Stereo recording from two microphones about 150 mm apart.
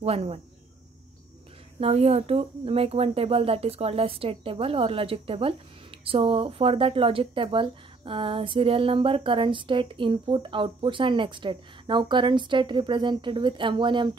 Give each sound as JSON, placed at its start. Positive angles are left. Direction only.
{"t": 0.0, "sound": "speech", "side_deg": -45}
{"t": 1.8, "sound": "a woman's voice", "side_deg": -40}